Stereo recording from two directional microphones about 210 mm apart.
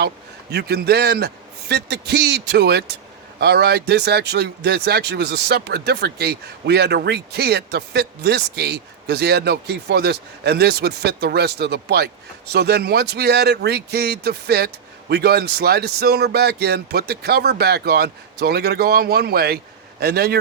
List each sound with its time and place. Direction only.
0.5 s speech: 50° right (ahead or behind)